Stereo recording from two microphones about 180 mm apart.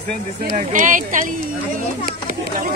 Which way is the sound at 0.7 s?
45° right (ahead or behind).